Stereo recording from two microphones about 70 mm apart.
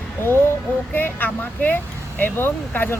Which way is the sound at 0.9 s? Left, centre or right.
Left.